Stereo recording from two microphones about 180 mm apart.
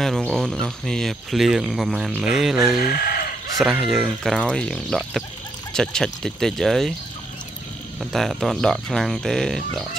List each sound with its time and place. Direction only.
0.0 s speech: centre (ahead or behind)
2.8 s speech: 55° left (ahead or behind)
3.5 s speech: centre (ahead or behind)
8.0 s speech: centre (ahead or behind)